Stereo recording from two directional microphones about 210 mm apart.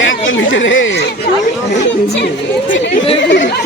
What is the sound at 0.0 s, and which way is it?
Speech, 60° left (ahead or behind).